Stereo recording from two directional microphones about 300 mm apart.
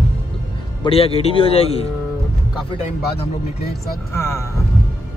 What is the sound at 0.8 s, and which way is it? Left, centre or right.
A man's voice, centre.